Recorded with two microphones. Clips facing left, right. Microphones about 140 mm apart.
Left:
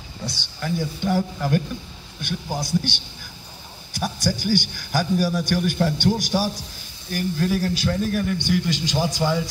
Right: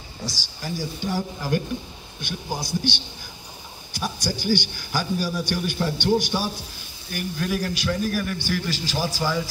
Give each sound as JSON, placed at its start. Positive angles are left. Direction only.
{"t": 0.3, "sound": "a man's voice", "side_deg": 60}
{"t": 7.2, "sound": "a man's voice", "side_deg": 35}